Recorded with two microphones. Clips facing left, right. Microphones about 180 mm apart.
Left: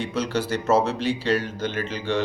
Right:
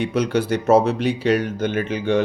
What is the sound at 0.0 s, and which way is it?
Speech, 55° right (ahead or behind).